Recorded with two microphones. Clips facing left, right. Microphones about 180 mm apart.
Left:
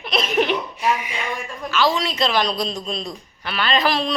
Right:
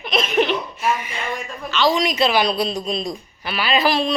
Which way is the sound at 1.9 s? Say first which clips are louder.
Right 3 dB; 15° right (ahead or behind).